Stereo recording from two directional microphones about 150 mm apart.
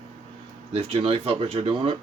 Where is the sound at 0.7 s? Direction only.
40° right (ahead or behind).